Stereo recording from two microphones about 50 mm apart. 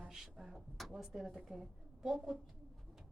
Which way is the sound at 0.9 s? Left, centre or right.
Centre.